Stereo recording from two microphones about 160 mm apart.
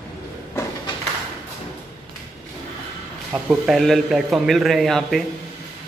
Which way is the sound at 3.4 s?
Centre (ahead or behind).